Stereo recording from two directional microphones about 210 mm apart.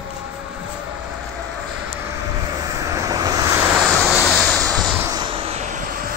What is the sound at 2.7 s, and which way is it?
Vehicle, 15° right (ahead or behind).